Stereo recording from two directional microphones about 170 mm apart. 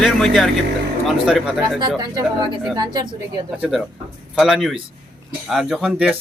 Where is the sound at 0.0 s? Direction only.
5° left (ahead or behind).